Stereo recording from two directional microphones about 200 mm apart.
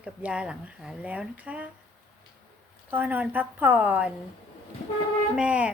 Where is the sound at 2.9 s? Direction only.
10° right (ahead or behind).